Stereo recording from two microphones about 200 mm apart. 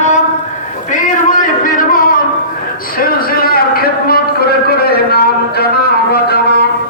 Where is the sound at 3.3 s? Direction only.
45° left (ahead or behind).